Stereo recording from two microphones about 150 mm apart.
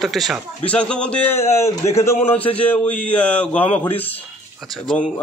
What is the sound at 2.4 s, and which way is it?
Speech, 40° left (ahead or behind).